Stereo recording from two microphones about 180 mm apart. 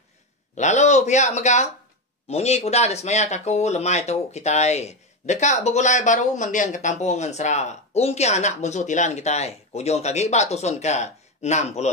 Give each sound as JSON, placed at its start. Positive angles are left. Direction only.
{"t": 0.6, "sound": "speech", "side_deg": 40}